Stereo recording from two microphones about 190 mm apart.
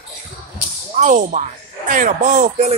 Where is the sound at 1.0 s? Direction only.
40° right (ahead or behind).